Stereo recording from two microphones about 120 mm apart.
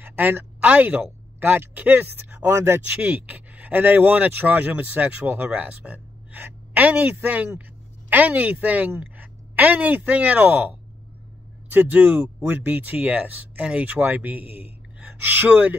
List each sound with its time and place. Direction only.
0.0 s a woman's voice: 15° right (ahead or behind)
11.7 s speech: 15° right (ahead or behind)